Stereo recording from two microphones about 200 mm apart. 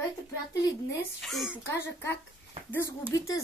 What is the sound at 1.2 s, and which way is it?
Speech, centre (ahead or behind).